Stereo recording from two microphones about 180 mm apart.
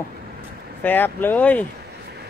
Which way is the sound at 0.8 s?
10° left (ahead or behind).